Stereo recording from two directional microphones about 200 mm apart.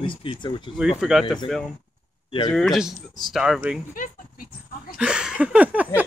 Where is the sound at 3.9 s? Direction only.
45° left (ahead or behind).